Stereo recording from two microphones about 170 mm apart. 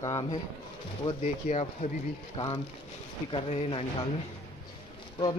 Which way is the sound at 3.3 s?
35° left (ahead or behind).